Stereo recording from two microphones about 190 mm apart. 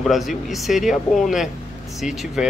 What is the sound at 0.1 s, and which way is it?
Speech, centre (ahead or behind).